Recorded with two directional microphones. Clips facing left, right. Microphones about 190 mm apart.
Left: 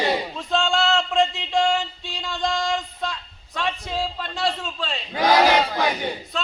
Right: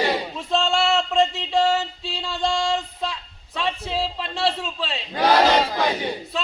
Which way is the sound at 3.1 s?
5° right (ahead or behind).